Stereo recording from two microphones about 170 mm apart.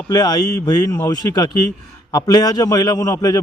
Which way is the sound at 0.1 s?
25° left (ahead or behind).